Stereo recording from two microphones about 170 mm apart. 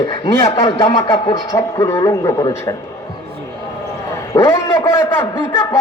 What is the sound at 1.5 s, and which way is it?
Speech, 20° left (ahead or behind).